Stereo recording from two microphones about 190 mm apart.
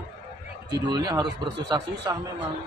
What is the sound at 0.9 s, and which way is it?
Speech, 20° right (ahead or behind).